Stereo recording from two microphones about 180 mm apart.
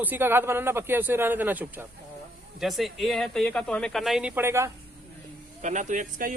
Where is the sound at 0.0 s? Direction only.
10° right (ahead or behind).